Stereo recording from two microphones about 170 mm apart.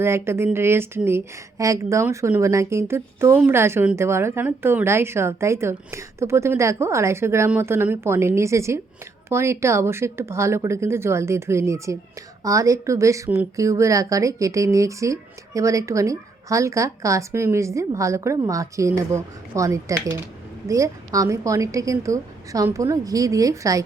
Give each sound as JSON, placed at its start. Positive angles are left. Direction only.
{"t": 0.0, "sound": "a woman's voice", "side_deg": -15}